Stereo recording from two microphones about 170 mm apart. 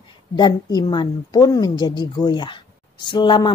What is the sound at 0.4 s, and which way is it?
A woman's voice, 25° left (ahead or behind).